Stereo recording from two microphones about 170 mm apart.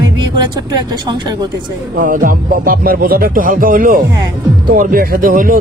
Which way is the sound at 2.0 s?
55° right (ahead or behind).